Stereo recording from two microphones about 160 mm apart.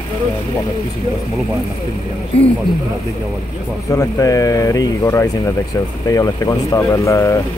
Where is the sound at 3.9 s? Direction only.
20° left (ahead or behind).